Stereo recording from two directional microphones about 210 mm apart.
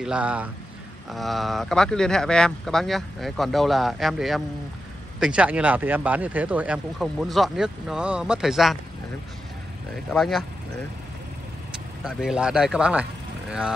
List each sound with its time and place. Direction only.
0.0 s speech: 5° right (ahead or behind)
10.1 s speech: centre (ahead or behind)
12.0 s speech: 5° right (ahead or behind)